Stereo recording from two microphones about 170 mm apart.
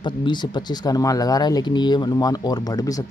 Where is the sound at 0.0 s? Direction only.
25° left (ahead or behind).